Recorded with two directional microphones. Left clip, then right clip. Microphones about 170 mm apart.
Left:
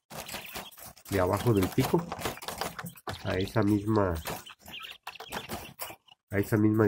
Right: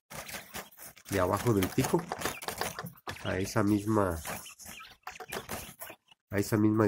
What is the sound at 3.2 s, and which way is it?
Speech, 20° right (ahead or behind).